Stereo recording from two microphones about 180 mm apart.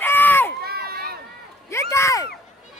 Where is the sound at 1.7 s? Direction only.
15° left (ahead or behind).